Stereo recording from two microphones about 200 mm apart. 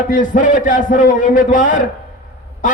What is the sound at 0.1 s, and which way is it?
A man's voice, 40° left (ahead or behind).